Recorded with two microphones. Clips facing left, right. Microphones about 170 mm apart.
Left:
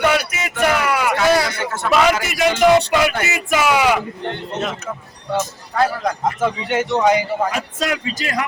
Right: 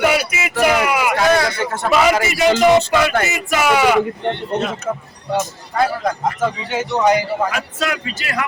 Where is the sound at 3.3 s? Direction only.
10° left (ahead or behind).